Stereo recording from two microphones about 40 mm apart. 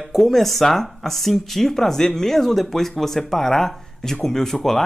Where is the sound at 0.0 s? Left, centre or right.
Centre.